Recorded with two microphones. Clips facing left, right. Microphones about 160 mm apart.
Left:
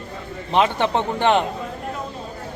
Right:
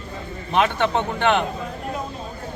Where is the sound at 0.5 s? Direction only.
30° left (ahead or behind).